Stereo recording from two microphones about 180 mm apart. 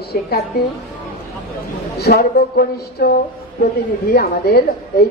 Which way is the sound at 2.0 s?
60° left (ahead or behind).